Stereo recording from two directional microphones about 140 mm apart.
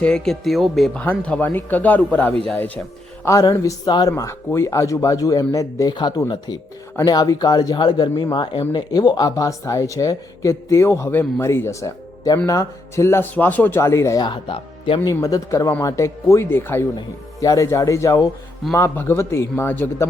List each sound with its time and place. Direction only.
0.0 s speech: 5° left (ahead or behind)
3.2 s speech: 25° left (ahead or behind)
14.3 s speech: 40° left (ahead or behind)
15.0 s speech: 25° left (ahead or behind)